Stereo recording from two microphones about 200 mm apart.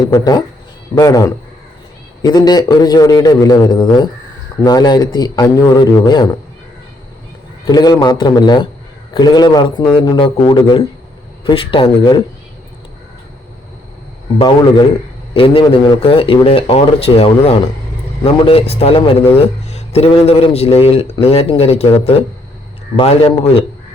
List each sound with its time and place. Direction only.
0.0 s a man's voice: 20° left (ahead or behind)
7.7 s speech: 20° left (ahead or behind)
14.3 s speech: 25° left (ahead or behind)